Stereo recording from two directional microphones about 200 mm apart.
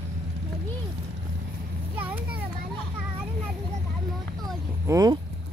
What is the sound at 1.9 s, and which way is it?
Children playing, 10° right (ahead or behind).